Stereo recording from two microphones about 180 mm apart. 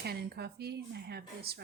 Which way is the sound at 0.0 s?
65° right (ahead or behind).